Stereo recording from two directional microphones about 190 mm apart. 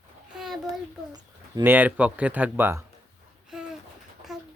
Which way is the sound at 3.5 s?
5° right (ahead or behind).